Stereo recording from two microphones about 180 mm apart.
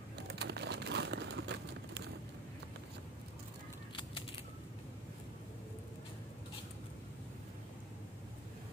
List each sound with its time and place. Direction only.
0.3 s crumpling: 65° right (ahead or behind)